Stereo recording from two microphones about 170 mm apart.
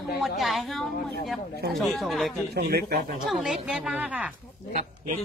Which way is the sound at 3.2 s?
Centre (ahead or behind).